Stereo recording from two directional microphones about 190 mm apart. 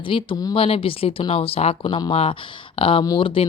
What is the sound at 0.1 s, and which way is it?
Speech, 25° left (ahead or behind).